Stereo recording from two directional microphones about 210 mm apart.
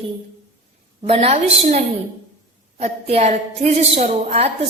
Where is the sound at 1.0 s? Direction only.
30° right (ahead or behind).